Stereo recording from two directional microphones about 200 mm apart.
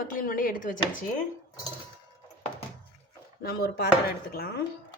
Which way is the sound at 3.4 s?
55° left (ahead or behind).